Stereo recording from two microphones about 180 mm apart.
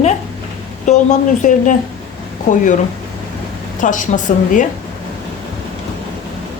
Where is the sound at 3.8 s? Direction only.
45° left (ahead or behind).